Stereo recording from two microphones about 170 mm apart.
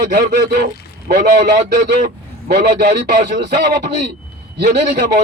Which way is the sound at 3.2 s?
70° right (ahead or behind).